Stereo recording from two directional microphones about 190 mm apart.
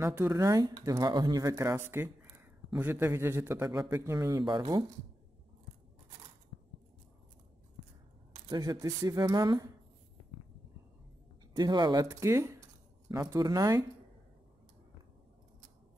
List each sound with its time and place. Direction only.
0.0 s speech: 15° right (ahead or behind)
8.5 s speech: 20° right (ahead or behind)
11.5 s speech: 20° right (ahead or behind)